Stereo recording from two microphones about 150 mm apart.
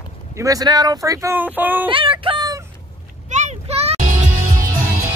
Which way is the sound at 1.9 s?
35° right (ahead or behind).